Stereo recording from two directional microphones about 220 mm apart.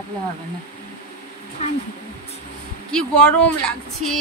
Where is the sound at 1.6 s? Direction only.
30° left (ahead or behind).